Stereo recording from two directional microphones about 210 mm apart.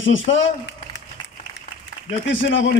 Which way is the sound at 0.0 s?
65° left (ahead or behind).